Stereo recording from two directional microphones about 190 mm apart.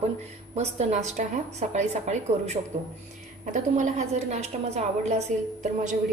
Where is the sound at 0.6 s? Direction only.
35° right (ahead or behind).